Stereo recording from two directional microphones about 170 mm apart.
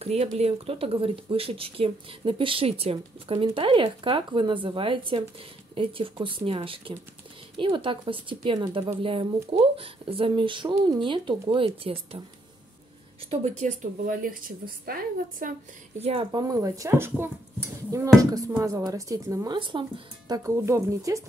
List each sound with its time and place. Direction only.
0.0 s speech: 40° right (ahead or behind)
13.3 s a woman's voice: 45° right (ahead or behind)
16.0 s speech: 35° right (ahead or behind); by 21.2 s 15° right (ahead or behind)